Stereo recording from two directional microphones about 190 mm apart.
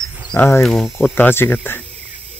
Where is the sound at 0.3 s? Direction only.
5° left (ahead or behind).